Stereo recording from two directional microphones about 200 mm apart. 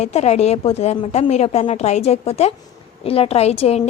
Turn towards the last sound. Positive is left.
turn(degrees=30)  # may be behind; listen again after turning